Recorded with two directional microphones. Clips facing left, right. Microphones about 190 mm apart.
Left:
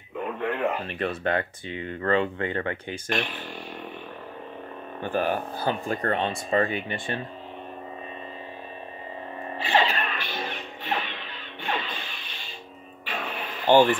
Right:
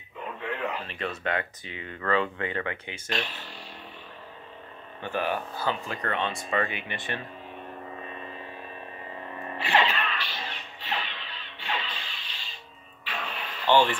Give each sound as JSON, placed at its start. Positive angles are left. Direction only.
{"t": 0.4, "sound": "a sound", "side_deg": 55}
{"t": 1.2, "sound": "speech", "side_deg": 30}
{"t": 3.1, "sound": "speech", "side_deg": 55}
{"t": 5.0, "sound": "speech", "side_deg": 45}
{"t": 9.6, "sound": "music", "side_deg": 35}
{"t": 13.7, "sound": "speech", "side_deg": 45}